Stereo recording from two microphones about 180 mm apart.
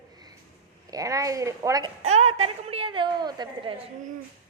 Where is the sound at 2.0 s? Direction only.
35° right (ahead or behind).